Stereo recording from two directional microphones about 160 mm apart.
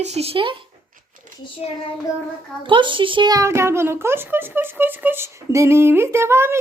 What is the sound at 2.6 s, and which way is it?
A child's voice, 30° right (ahead or behind).